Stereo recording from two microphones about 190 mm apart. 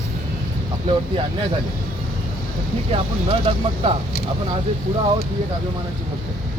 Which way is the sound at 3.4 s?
30° right (ahead or behind).